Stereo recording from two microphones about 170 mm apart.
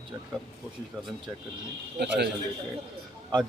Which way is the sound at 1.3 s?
15° right (ahead or behind).